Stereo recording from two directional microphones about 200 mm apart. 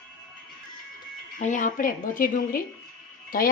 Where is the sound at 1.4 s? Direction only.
40° left (ahead or behind).